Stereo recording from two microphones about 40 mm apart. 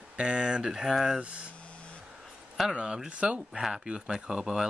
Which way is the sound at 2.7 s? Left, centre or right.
Right.